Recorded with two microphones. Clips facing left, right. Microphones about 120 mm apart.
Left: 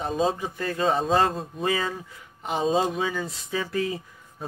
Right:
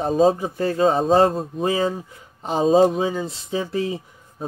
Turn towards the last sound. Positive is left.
turn(degrees=-30)  # may be behind; listen again after turning